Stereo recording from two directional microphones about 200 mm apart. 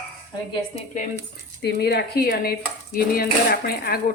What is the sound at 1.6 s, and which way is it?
Speech, 55° left (ahead or behind).